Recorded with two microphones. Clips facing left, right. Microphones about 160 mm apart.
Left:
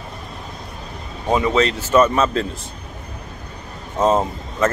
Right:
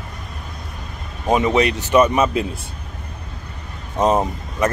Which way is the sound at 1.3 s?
20° right (ahead or behind).